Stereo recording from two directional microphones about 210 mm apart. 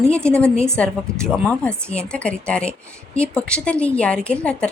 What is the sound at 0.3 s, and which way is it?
A woman's voice, 5° left (ahead or behind).